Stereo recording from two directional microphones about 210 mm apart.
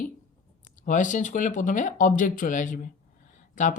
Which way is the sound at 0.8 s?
35° left (ahead or behind).